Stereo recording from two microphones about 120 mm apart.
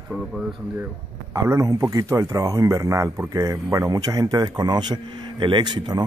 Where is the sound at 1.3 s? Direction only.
30° right (ahead or behind).